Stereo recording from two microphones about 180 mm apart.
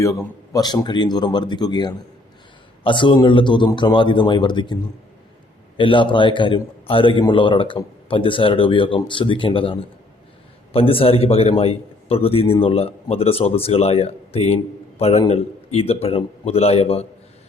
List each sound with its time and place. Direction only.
0.0 s a man's voice: 15° left (ahead or behind); by 17.1 s 35° left (ahead or behind)